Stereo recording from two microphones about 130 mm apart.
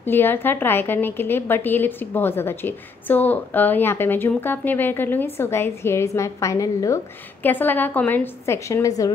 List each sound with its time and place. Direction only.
0.0 s a woman's voice: 15° left (ahead or behind)
7.4 s a woman's voice: 15° left (ahead or behind)